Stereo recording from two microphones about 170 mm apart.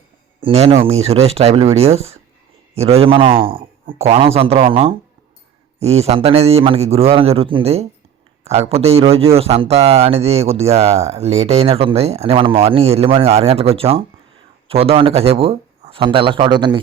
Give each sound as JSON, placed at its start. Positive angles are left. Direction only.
{"t": 0.4, "sound": "a man's voice", "side_deg": -40}